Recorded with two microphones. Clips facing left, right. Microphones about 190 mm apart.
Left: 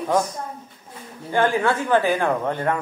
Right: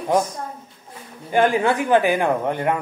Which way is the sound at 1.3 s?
15° right (ahead or behind).